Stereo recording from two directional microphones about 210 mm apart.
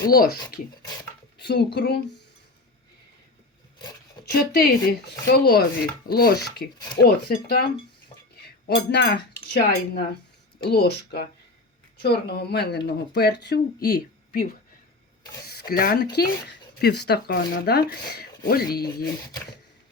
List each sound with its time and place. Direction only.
0.1 s speech: 45° left (ahead or behind)
1.4 s speech: 50° left (ahead or behind)
4.3 s speech: 50° left (ahead or behind)